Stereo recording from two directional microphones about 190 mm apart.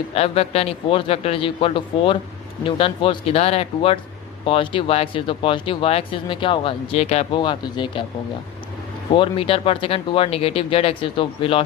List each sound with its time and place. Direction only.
0.1 s speech: 35° left (ahead or behind)
9.1 s speech: 25° left (ahead or behind)